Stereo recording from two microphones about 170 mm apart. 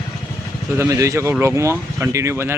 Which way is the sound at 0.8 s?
20° right (ahead or behind).